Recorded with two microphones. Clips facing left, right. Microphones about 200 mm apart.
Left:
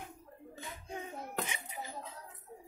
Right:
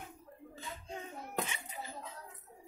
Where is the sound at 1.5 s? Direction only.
15° left (ahead or behind).